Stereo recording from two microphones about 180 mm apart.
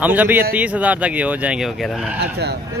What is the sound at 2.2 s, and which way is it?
Speech, 65° right (ahead or behind).